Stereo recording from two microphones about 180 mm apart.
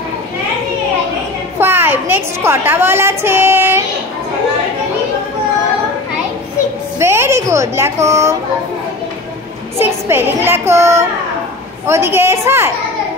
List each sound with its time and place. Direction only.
1.6 s a sound: 10° right (ahead or behind)
7.0 s a woman's voice: 15° right (ahead or behind)
9.8 s a child's voice: 15° right (ahead or behind)